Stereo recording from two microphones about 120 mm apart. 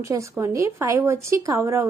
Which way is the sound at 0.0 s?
25° right (ahead or behind).